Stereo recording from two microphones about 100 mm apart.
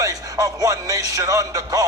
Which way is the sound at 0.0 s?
35° right (ahead or behind).